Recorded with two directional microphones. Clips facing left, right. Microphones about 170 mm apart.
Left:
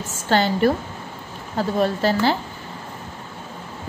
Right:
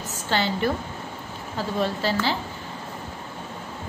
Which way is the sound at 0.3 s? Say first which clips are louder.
Left 6 dB; 50° left (ahead or behind).